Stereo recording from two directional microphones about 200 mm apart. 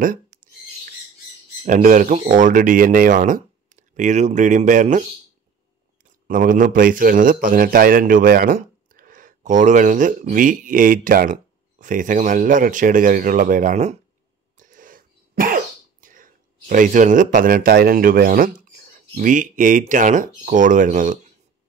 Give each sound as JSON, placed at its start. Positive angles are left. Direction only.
{"t": 1.6, "sound": "speech", "side_deg": -40}
{"t": 6.0, "sound": "speech", "side_deg": -40}
{"t": 14.6, "sound": "cough", "side_deg": -40}